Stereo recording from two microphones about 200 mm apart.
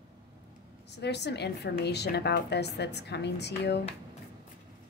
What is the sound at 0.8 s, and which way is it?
A woman's voice, 60° left (ahead or behind).